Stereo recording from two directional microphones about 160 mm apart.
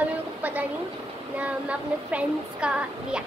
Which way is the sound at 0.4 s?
10° right (ahead or behind).